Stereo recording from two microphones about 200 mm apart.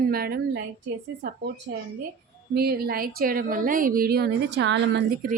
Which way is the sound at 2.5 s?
50° right (ahead or behind).